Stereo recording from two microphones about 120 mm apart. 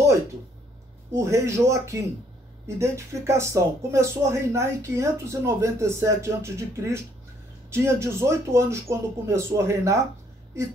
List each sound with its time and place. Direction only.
1.1 s speech: 25° right (ahead or behind)